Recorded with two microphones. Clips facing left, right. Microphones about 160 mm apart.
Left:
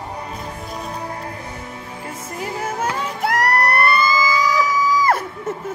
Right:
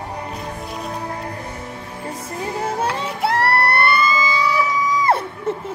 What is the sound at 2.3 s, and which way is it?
Music, 30° right (ahead or behind).